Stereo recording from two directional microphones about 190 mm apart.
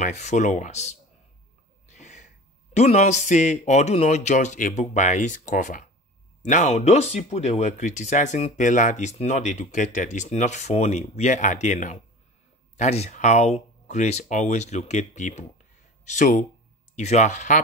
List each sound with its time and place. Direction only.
0.0 s speech: 40° left (ahead or behind)
1.9 s gasp: 35° left (ahead or behind)
2.7 s speech: 35° left (ahead or behind)